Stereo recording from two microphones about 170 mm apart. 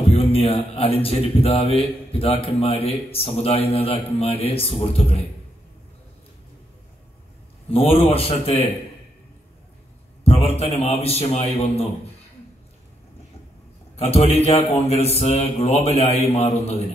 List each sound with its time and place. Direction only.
0.0 s speech: 35° left (ahead or behind)
7.7 s speech: 35° left (ahead or behind)
10.2 s speech: 35° left (ahead or behind)
13.9 s speech: 35° left (ahead or behind)